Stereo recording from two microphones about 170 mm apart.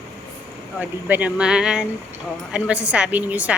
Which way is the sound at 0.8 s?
10° right (ahead or behind).